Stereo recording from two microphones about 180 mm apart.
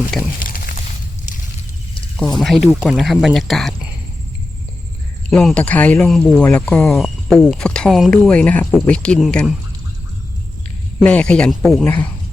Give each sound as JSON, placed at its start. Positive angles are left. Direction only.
{"t": 0.3, "sound": "a sound", "side_deg": 50}
{"t": 2.3, "sound": "speech", "side_deg": 0}
{"t": 5.3, "sound": "speech", "side_deg": 5}
{"t": 11.0, "sound": "speech", "side_deg": 5}